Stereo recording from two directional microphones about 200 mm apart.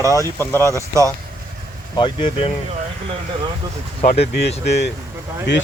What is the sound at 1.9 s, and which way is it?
Speech, 25° left (ahead or behind).